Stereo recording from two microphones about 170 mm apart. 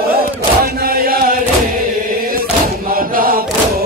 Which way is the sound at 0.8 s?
60° right (ahead or behind).